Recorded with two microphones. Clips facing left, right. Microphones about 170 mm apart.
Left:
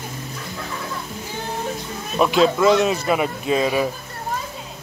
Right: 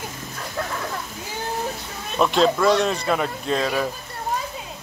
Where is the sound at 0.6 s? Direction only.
55° right (ahead or behind).